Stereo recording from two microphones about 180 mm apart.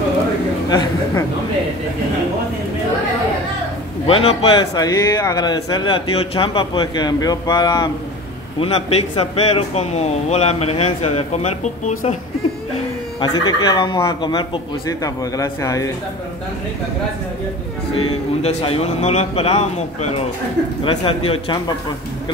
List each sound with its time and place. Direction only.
0.7 s speech: 20° left (ahead or behind)
4.1 s speech: 35° left (ahead or behind)
4.7 s speech: 20° left (ahead or behind); by 12.2 s 45° left (ahead or behind)
13.2 s speech: 25° left (ahead or behind)
17.9 s speech: 35° left (ahead or behind)